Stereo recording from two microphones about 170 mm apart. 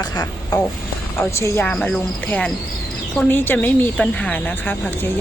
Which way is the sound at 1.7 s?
Centre (ahead or behind).